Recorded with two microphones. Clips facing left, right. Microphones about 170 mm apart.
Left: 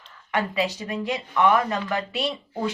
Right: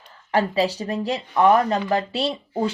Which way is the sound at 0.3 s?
35° right (ahead or behind).